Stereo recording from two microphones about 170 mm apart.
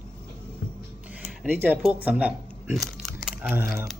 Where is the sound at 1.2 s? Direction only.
10° right (ahead or behind).